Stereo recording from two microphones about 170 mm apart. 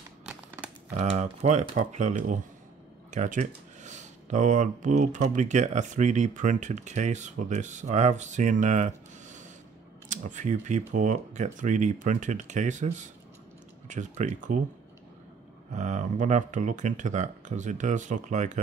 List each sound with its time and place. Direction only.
0.9 s speech: 45° right (ahead or behind)
15.7 s speech: 45° right (ahead or behind)